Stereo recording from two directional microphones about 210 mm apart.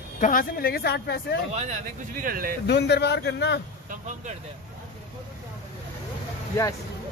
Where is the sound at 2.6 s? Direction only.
55° left (ahead or behind).